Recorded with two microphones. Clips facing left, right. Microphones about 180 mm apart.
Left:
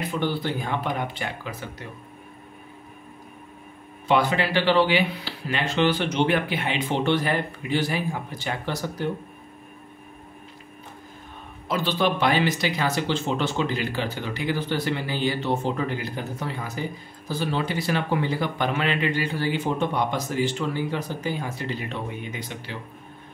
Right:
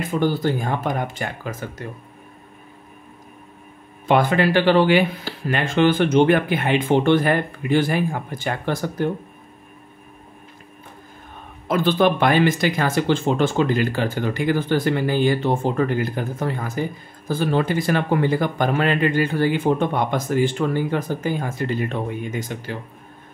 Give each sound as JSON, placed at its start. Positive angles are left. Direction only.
{"t": 0.0, "sound": "speech", "side_deg": -45}
{"t": 4.1, "sound": "speech", "side_deg": -50}
{"t": 11.6, "sound": "speech", "side_deg": -50}